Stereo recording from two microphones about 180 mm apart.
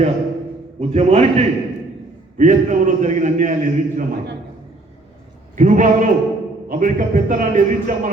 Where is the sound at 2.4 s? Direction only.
45° right (ahead or behind).